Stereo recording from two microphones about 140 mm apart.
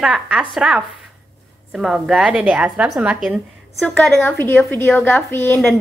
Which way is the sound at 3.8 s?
5° left (ahead or behind).